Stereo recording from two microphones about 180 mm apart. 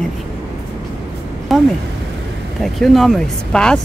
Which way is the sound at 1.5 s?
Centre (ahead or behind).